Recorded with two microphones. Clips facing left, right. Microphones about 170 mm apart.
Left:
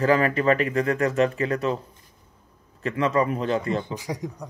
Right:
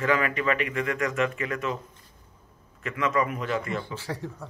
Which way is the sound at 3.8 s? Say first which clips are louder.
Left 3 dB; 15° left (ahead or behind).